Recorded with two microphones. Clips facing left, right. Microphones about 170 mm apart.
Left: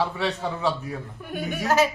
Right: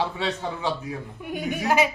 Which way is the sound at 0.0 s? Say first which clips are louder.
Left 1 dB; 20° right (ahead or behind).